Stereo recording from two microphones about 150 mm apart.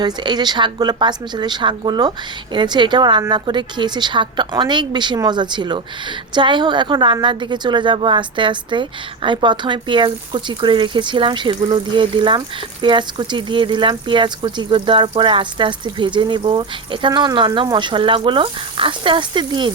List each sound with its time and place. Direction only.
0.0 s speech: 30° right (ahead or behind)